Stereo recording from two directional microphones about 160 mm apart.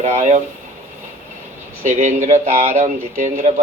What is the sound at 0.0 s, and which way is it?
Speech, 45° right (ahead or behind).